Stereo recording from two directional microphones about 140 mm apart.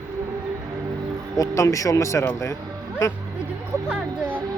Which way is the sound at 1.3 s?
25° left (ahead or behind).